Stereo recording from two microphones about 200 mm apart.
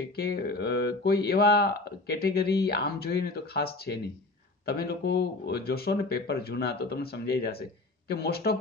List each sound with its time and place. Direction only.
0.1 s speech: 50° left (ahead or behind)